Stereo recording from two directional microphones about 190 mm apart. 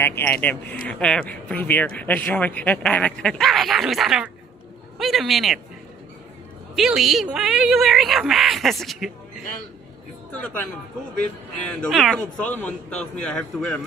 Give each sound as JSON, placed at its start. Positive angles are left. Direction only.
{"t": 0.0, "sound": "speech", "side_deg": 10}
{"t": 6.7, "sound": "speech", "side_deg": 0}
{"t": 10.3, "sound": "speech", "side_deg": 10}